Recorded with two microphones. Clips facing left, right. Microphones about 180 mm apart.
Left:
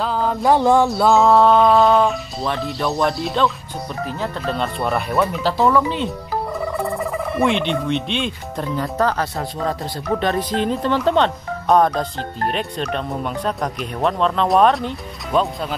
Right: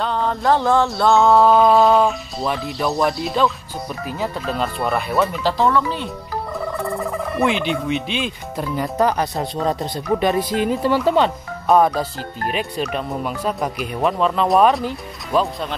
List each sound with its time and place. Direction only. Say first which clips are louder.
0.0 s a sound: left 1 dB; 5° left (ahead or behind)
0.5 s a sound: left 2 dB; 15° left (ahead or behind)
0.8 s speech: left 1 dB; 5° left (ahead or behind)
5.8 s speech: left 2 dB; 20° left (ahead or behind)
6.8 s speech: left 1 dB; centre (ahead or behind)
8.7 s speech: right 1 dB; 15° right (ahead or behind)